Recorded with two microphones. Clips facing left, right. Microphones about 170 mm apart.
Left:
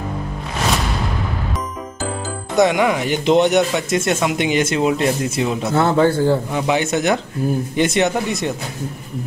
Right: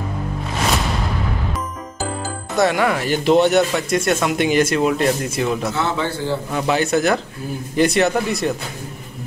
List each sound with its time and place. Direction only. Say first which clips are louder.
2.5 s speech: left 2 dB; 20° left (ahead or behind)
5.8 s a man's voice: left 7 dB; 50° left (ahead or behind)
6.5 s speech: even; 15° left (ahead or behind)